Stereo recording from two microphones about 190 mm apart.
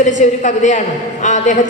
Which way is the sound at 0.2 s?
40° left (ahead or behind).